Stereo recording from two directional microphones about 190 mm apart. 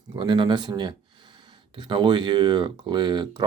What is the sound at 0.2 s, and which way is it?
Speech, 25° right (ahead or behind).